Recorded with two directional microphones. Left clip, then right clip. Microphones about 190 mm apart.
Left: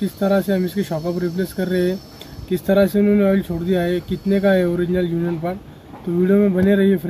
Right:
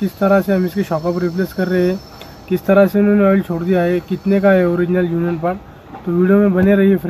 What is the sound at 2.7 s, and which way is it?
Speech, 25° right (ahead or behind).